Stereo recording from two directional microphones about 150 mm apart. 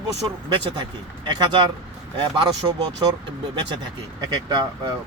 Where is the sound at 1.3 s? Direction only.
30° right (ahead or behind).